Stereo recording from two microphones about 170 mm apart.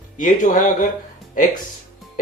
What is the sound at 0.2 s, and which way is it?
Speech, 50° left (ahead or behind).